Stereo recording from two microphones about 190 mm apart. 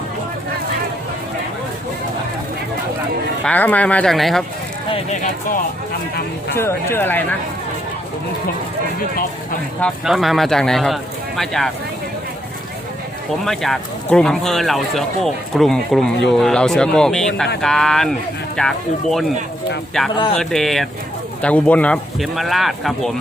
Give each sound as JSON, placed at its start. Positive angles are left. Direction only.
{"t": 3.4, "sound": "speech", "side_deg": 10}
{"t": 4.9, "sound": "speech", "side_deg": 40}
{"t": 6.6, "sound": "speech", "side_deg": 10}
{"t": 9.8, "sound": "speech", "side_deg": 0}
{"t": 13.4, "sound": "speech", "side_deg": 0}
{"t": 20.1, "sound": "speech", "side_deg": 25}
{"t": 20.4, "sound": "speech", "side_deg": 0}